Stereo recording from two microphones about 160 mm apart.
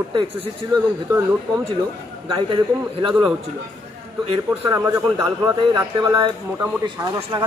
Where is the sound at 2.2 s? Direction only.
30° right (ahead or behind).